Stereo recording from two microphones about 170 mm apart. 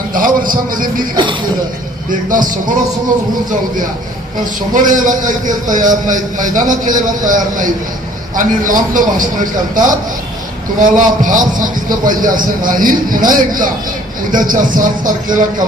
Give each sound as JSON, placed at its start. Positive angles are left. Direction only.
{"t": 0.1, "sound": "a man's voice", "side_deg": -55}
{"t": 1.1, "sound": "speech", "side_deg": -30}
{"t": 2.3, "sound": "a man's voice", "side_deg": -50}
{"t": 4.7, "sound": "a man's voice", "side_deg": -50}
{"t": 10.8, "sound": "a man's voice", "side_deg": -50}